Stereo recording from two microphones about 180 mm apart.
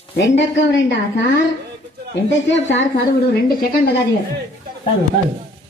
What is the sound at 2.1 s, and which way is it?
A woman's voice, 85° left.